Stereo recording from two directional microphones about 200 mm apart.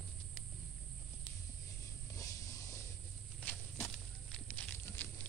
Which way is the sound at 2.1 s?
15° left (ahead or behind).